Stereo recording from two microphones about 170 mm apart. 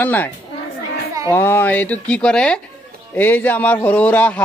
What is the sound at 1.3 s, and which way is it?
A man's voice, 15° left (ahead or behind).